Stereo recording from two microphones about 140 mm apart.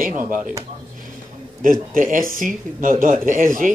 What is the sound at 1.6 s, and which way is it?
A man's voice, 75° right (ahead or behind).